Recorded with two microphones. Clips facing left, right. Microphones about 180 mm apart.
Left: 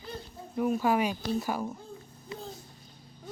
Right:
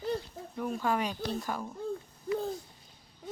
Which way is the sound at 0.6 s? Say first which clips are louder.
Left 5 dB; 10° left (ahead or behind).